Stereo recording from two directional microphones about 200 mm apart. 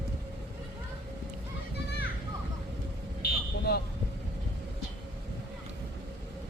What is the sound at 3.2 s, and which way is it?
Vehicle, 50° left (ahead or behind).